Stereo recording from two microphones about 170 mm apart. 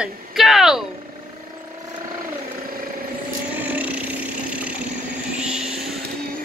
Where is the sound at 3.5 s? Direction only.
10° right (ahead or behind).